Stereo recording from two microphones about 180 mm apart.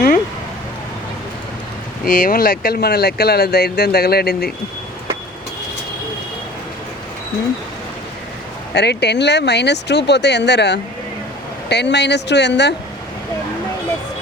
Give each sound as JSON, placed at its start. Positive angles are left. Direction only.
{"t": 2.0, "sound": "speech", "side_deg": 50}
{"t": 8.7, "sound": "speech", "side_deg": 70}